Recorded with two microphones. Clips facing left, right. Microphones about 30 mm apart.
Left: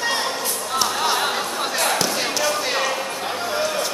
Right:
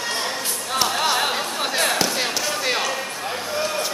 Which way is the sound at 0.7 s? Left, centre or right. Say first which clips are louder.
Right 1 dB; centre.